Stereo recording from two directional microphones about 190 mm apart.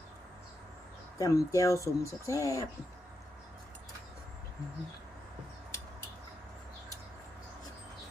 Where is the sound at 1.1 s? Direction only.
15° left (ahead or behind).